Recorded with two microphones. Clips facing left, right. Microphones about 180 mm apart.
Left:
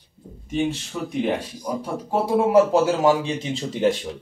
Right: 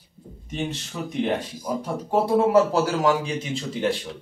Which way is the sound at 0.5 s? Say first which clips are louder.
Left 6 dB; 10° left (ahead or behind).